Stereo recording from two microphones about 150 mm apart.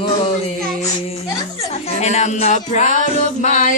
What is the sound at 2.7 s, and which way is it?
Music, 55° left (ahead or behind).